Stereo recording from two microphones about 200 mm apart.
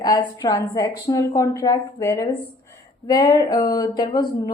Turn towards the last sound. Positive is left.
turn(degrees=20)  # may be behind; listen again after turning